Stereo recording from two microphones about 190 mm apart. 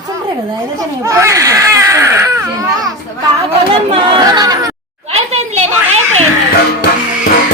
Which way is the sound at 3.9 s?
25° right (ahead or behind).